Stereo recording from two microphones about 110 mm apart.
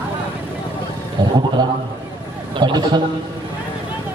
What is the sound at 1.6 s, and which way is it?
A man's voice, 40° right (ahead or behind).